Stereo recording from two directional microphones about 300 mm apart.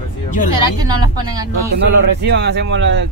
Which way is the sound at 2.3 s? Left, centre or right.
Right.